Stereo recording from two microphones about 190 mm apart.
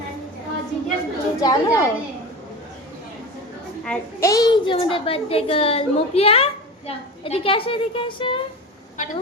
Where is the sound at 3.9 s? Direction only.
5° left (ahead or behind).